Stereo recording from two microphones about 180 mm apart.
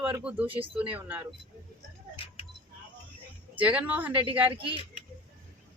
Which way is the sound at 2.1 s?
30° left (ahead or behind).